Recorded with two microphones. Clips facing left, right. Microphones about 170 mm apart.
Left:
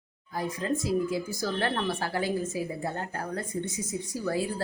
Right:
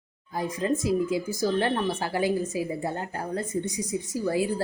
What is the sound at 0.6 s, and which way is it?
Speech, 15° right (ahead or behind).